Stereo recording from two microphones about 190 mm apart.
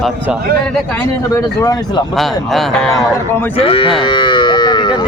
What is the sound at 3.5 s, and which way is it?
Cattle, 30° left (ahead or behind).